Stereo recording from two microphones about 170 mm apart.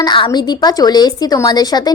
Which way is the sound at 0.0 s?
30° left (ahead or behind).